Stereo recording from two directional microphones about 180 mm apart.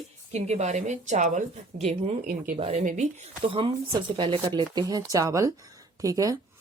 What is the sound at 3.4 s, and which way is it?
Speech, 30° right (ahead or behind).